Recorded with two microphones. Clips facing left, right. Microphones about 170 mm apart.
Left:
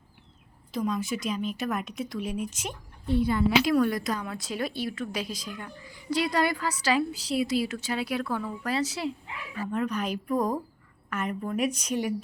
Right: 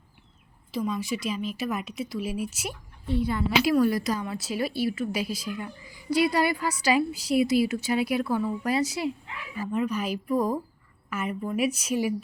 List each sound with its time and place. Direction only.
0.7 s a woman's voice: centre (ahead or behind)